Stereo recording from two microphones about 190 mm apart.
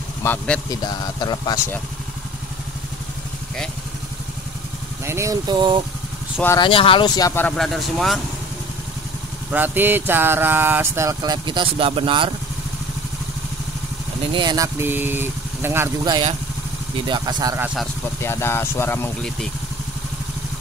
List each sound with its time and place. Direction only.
0.2 s speech: 10° left (ahead or behind)
0.8 s speech: 20° left (ahead or behind)
5.0 s speech: 15° right (ahead or behind)
6.6 s speech: 30° left (ahead or behind); by 8.2 s centre (ahead or behind)
9.5 s speech: 10° right (ahead or behind); by 12.3 s 25° right (ahead or behind)
14.3 s speech: 20° right (ahead or behind)
18.2 s speech: 15° left (ahead or behind)